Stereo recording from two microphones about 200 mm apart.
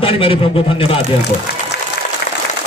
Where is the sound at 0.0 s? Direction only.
25° left (ahead or behind).